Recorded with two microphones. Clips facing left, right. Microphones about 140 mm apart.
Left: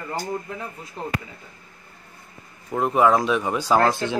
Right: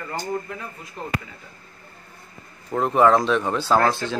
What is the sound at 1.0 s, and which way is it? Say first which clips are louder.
Speech: left 2 dB; 30° left (ahead or behind).